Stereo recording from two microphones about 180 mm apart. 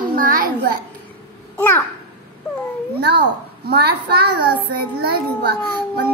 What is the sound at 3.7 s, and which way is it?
A child's voice, 60° right (ahead or behind).